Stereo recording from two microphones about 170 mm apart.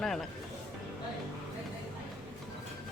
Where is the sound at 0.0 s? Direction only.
Centre (ahead or behind).